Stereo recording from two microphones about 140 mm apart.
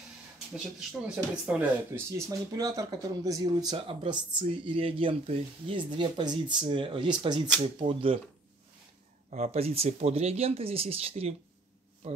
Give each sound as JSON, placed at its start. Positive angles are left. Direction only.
{"t": 0.7, "sound": "speech", "side_deg": -5}
{"t": 1.9, "sound": "speech", "side_deg": -20}
{"t": 9.3, "sound": "speech", "side_deg": -50}